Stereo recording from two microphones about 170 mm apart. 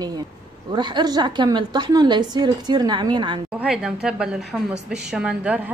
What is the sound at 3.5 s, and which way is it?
A woman's voice, 5° right (ahead or behind).